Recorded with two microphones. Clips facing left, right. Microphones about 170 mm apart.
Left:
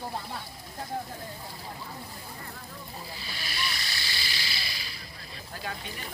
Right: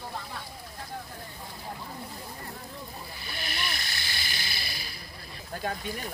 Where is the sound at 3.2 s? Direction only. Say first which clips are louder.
Right 2 dB; 55° right (ahead or behind).